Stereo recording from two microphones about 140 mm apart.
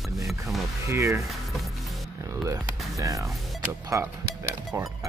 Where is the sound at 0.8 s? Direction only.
20° right (ahead or behind).